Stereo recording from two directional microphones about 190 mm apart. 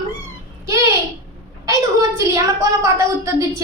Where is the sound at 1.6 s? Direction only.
15° right (ahead or behind).